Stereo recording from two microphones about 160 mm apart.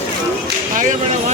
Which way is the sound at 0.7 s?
50° right (ahead or behind).